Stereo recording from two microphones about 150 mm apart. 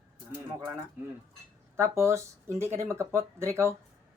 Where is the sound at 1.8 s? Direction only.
20° right (ahead or behind).